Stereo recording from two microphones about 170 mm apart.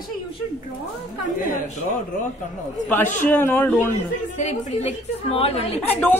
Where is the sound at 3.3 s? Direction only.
10° left (ahead or behind).